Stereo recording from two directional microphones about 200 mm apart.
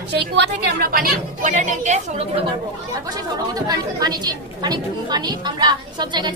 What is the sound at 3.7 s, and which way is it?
A woman's voice, 20° right (ahead or behind).